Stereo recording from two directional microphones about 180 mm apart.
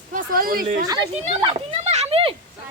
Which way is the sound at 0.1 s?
50° right (ahead or behind).